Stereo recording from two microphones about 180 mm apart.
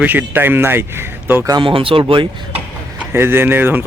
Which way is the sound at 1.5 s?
30° right (ahead or behind).